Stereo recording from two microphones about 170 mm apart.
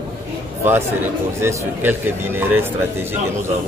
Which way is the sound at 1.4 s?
10° right (ahead or behind).